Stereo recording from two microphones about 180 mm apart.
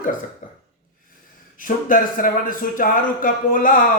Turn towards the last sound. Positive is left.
turn(degrees=50)  # may be behind; listen again after turning